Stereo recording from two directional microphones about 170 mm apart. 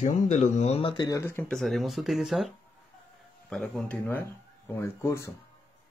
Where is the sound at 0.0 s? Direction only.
45° left (ahead or behind).